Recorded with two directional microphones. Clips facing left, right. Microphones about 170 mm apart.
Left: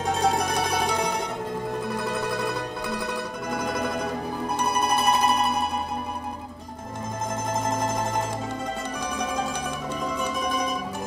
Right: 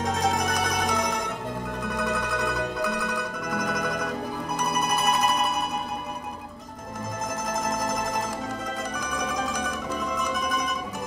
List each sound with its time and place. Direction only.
0.0 s music: 30° left (ahead or behind)
2.0 s mandolin: 30° left (ahead or behind)
4.6 s zither: 30° left (ahead or behind)
7.6 s music: 30° left (ahead or behind)
9.1 s mandolin: 30° left (ahead or behind)